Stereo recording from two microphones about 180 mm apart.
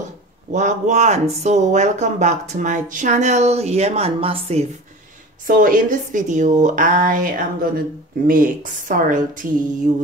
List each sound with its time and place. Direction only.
0.5 s speech: 40° right (ahead or behind)
5.5 s speech: 50° right (ahead or behind)